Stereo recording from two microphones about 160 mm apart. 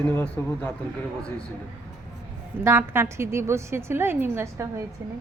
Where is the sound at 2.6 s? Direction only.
15° right (ahead or behind).